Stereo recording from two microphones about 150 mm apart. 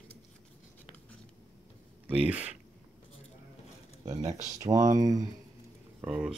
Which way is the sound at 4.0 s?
25° right (ahead or behind).